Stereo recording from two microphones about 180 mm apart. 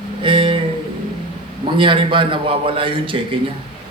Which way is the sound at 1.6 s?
30° right (ahead or behind).